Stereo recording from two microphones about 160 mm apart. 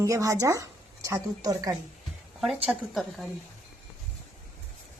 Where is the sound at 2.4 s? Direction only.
5° right (ahead or behind).